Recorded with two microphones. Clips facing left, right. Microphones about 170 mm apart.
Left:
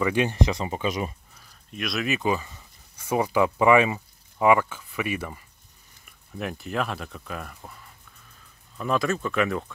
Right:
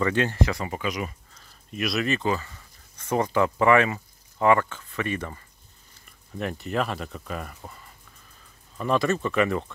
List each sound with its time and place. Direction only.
0.0 s speech: 15° left (ahead or behind)
1.7 s speech: centre (ahead or behind)